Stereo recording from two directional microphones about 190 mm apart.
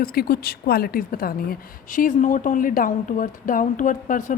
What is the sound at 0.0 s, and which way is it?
A woman's voice, 55° left (ahead or behind).